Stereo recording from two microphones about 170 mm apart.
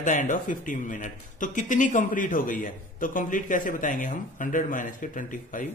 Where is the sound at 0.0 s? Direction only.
50° left (ahead or behind).